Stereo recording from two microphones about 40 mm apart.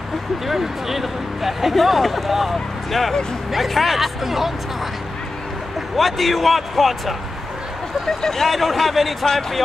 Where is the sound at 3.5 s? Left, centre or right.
Centre.